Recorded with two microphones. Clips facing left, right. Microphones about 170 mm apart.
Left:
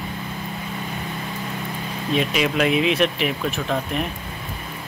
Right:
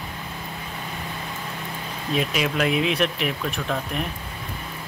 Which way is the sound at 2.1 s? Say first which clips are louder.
Left 3 dB; centre (ahead or behind).